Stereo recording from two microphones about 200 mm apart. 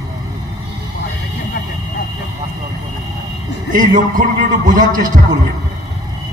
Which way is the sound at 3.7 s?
40° right (ahead or behind).